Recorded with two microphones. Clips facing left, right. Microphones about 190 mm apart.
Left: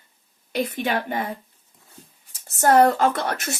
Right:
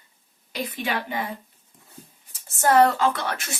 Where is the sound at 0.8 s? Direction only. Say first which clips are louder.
Left 3 dB; 45° left (ahead or behind).